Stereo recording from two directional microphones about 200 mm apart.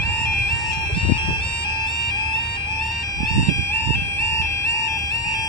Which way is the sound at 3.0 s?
20° left (ahead or behind).